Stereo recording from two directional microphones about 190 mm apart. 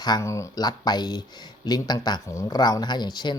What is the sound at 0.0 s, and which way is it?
Speech, 20° left (ahead or behind).